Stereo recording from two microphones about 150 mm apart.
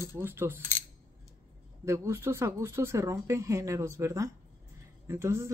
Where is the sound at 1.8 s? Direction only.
20° right (ahead or behind).